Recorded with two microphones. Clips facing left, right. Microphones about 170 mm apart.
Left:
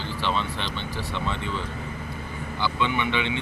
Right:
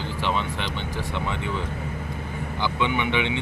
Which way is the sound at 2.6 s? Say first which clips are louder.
Right 1 dB; 15° right (ahead or behind).